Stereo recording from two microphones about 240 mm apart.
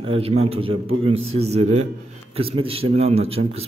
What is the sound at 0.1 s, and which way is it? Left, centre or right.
Speech, right.